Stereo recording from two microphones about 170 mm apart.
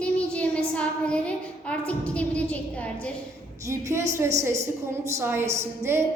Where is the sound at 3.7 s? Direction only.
15° right (ahead or behind).